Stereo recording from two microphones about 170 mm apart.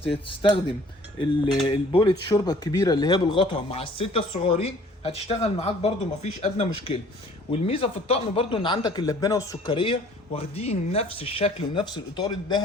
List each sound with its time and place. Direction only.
0.0 s speech: 30° left (ahead or behind)
1.6 s speech: 30° left (ahead or behind)